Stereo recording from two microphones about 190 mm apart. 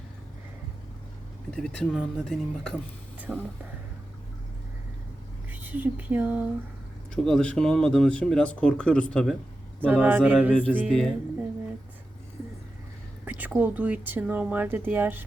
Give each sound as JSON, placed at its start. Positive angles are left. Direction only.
{"t": 1.5, "sound": "speech", "side_deg": 5}
{"t": 5.5, "sound": "speech", "side_deg": -10}
{"t": 7.3, "sound": "speech", "side_deg": 5}
{"t": 9.8, "sound": "speech", "side_deg": -10}
{"t": 10.8, "sound": "speech", "side_deg": 5}
{"t": 13.2, "sound": "speech", "side_deg": -10}